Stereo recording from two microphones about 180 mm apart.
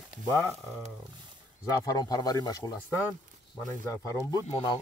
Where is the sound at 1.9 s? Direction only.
20° left (ahead or behind).